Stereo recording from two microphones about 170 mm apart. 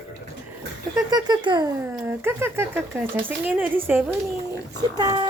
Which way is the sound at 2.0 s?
15° right (ahead or behind).